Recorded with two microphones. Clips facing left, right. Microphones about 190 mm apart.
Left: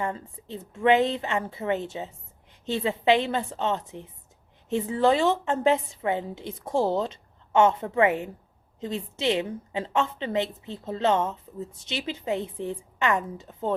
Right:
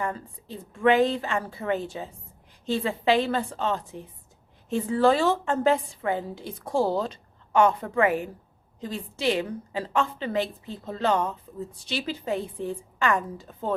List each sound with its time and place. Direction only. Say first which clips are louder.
0.0 s a woman's voice: even; 25° left (ahead or behind)